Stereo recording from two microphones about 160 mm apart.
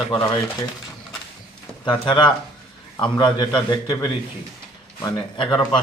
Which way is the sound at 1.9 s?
30° left (ahead or behind).